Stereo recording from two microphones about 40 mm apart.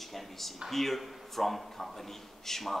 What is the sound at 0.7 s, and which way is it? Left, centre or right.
Speech, centre.